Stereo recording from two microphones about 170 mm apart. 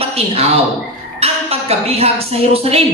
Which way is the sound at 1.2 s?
35° right (ahead or behind).